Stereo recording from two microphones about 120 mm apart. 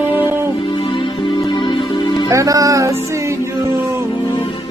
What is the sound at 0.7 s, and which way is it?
Music, 40° left (ahead or behind).